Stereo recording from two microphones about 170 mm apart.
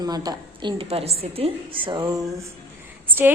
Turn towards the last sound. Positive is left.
turn(degrees=-10)  # may be behind; listen again after turning